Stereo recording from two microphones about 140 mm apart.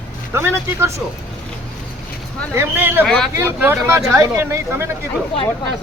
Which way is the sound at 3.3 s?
15° right (ahead or behind).